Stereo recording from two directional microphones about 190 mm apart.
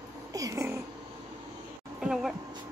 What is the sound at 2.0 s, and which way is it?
Speech, centre (ahead or behind).